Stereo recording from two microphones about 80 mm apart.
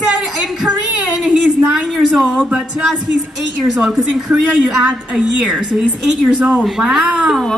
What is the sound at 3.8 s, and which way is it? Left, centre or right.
A woman's voice, centre.